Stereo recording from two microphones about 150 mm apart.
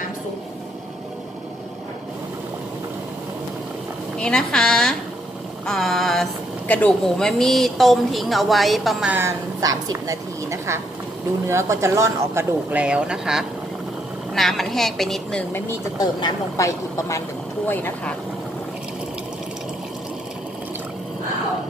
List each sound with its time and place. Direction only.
4.2 s speech: 5° left (ahead or behind)
5.7 s a sound: centre (ahead or behind)
6.7 s speech: 5° left (ahead or behind)
9.1 s a woman's voice: 20° right (ahead or behind)
12.7 s speech: 5° right (ahead or behind)
16.0 s a woman's voice: 30° left (ahead or behind)